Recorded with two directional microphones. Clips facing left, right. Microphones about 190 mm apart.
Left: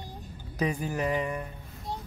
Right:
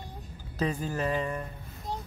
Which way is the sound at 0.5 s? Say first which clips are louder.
Left 1 dB; 15° left (ahead or behind).